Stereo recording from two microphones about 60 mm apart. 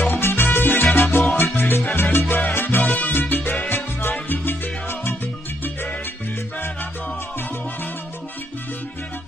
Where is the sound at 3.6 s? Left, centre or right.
Left.